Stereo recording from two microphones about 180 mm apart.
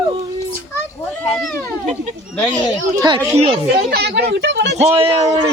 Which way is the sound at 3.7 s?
65° right (ahead or behind).